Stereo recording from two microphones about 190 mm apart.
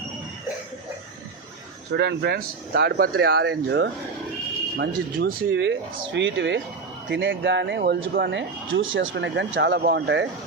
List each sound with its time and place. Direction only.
1.9 s speech: 65° right (ahead or behind)